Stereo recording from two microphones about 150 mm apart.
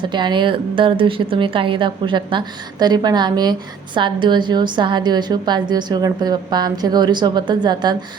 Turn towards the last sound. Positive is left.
turn(degrees=-30)  # may be behind; listen again after turning